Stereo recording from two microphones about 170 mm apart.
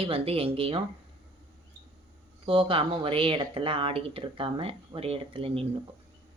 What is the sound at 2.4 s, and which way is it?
Speech, 30° right (ahead or behind).